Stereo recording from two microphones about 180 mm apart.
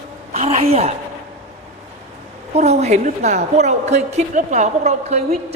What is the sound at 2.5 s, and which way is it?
A woman's voice, 35° right (ahead or behind).